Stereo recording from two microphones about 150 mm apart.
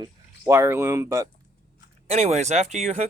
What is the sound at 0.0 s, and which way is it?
Speech, 20° right (ahead or behind).